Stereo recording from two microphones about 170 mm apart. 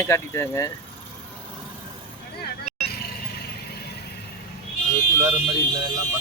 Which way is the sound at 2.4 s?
65° left (ahead or behind).